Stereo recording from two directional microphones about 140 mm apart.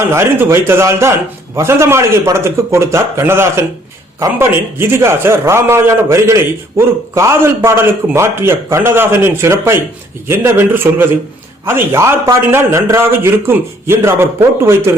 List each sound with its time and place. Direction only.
0.0 s a man's voice: 20° right (ahead or behind)